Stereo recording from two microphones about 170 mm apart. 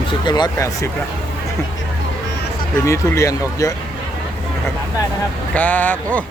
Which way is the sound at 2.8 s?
20° left (ahead or behind).